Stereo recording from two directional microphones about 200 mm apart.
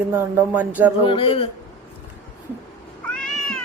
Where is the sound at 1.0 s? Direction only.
25° left (ahead or behind).